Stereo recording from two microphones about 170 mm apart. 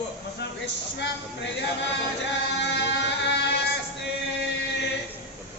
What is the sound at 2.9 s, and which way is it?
Music, 90° left.